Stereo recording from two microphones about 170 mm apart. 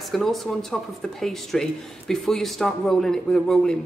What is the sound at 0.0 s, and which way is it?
Speech, centre (ahead or behind).